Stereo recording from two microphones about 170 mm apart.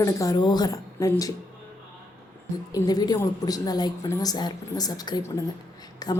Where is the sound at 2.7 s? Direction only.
20° left (ahead or behind).